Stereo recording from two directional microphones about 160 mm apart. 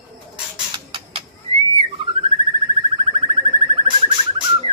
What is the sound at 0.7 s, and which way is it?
Rodents, 30° right (ahead or behind).